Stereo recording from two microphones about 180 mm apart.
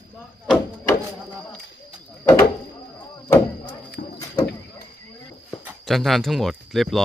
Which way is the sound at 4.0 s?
55° left (ahead or behind).